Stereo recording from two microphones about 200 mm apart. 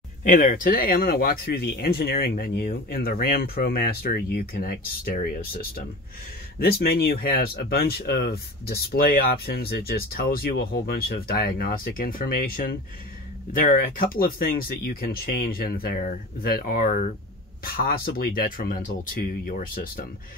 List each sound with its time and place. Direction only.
0.2 s speech: 40° left (ahead or behind)